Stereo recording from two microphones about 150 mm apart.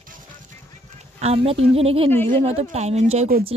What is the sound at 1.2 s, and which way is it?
A woman's voice, 40° right (ahead or behind).